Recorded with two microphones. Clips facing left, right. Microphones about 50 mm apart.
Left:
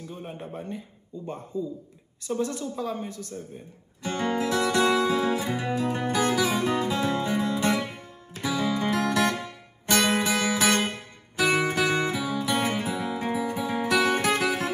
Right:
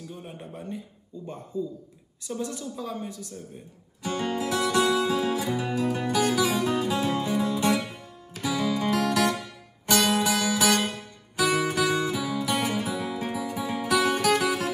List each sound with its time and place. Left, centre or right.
0.0 s a sound: left
0.3 s a man's voice: left
2.3 s a woman's voice: centre
2.6 s guitar: left